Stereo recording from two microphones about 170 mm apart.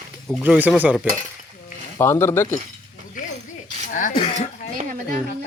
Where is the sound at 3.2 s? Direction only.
50° left (ahead or behind).